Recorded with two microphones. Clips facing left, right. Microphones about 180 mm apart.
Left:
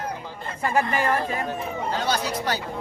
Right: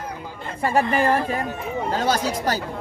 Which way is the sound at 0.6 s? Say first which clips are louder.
Right 3 dB; 30° right (ahead or behind).